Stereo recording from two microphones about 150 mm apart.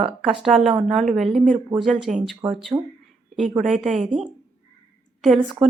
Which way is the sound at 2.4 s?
35° right (ahead or behind).